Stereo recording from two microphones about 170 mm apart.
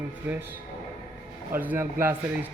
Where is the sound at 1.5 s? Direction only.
10° right (ahead or behind).